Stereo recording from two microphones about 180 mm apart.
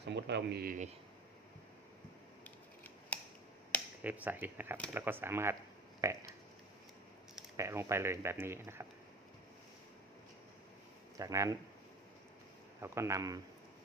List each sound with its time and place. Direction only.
0.0 s speech: 70° right (ahead or behind); by 0.9 s 55° right (ahead or behind)
2.4 s scissors: 10° left (ahead or behind)
4.0 s speech: 10° right (ahead or behind)
6.0 s burping: 15° right (ahead or behind)
7.5 s speech: 15° right (ahead or behind)
11.2 s speech: 20° right (ahead or behind)
12.8 s speech: 15° right (ahead or behind)